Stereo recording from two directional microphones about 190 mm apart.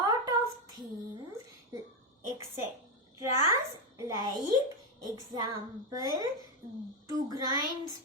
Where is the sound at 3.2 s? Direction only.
15° right (ahead or behind).